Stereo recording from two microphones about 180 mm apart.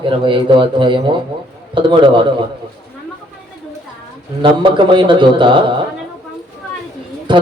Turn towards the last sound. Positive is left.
turn(degrees=-25)  # may be behind; listen again after turning